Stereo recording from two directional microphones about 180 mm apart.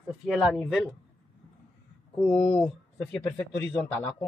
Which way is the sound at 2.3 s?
30° left (ahead or behind).